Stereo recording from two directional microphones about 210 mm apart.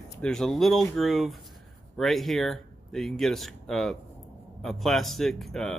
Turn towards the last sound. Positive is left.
turn(degrees=0)  # may be behind; listen again after turning